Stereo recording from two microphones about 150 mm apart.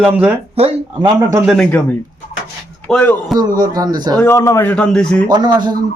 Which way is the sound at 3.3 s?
30° right (ahead or behind).